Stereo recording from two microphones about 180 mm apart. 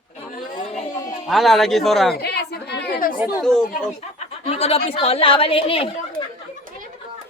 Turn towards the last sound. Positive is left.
turn(degrees=30)  # may be behind; listen again after turning